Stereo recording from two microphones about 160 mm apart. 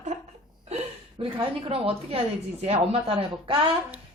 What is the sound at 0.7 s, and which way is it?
Hiccup, 40° right (ahead or behind).